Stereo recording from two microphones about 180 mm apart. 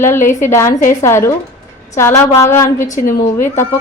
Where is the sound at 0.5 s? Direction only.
15° left (ahead or behind).